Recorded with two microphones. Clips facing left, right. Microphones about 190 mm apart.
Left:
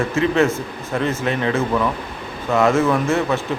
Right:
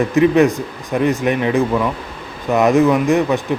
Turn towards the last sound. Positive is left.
turn(degrees=-15)  # may be behind; listen again after turning